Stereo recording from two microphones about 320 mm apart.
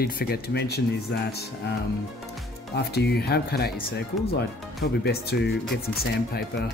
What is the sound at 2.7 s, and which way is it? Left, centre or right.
Speech, left.